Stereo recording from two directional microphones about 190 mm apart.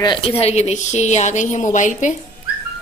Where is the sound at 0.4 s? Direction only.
35° left (ahead or behind).